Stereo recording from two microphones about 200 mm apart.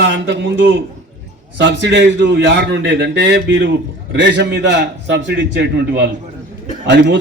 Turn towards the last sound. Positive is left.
turn(degrees=-60)  # may be behind; listen again after turning